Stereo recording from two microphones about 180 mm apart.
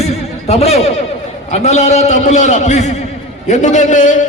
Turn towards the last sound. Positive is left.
turn(degrees=45)  # may be behind; listen again after turning